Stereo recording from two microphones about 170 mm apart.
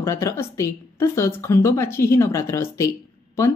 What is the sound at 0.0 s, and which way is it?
A woman's voice, 15° left (ahead or behind).